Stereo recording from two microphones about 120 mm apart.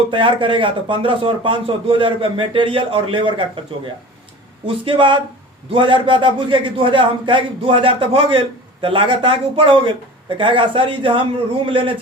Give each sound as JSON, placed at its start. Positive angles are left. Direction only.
{"t": 0.1, "sound": "a man's voice", "side_deg": -45}
{"t": 4.6, "sound": "a man's voice", "side_deg": -45}